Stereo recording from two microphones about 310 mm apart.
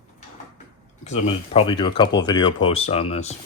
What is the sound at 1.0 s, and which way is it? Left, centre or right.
Speech, left.